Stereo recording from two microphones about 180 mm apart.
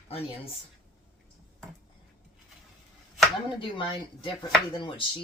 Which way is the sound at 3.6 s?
30° left (ahead or behind).